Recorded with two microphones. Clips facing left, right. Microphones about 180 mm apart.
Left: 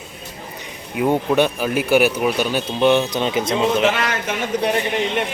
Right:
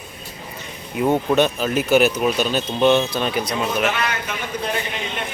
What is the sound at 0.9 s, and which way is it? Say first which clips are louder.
A man's voice: even; 10° left (ahead or behind).